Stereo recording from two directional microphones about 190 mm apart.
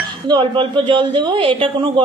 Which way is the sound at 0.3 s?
25° right (ahead or behind).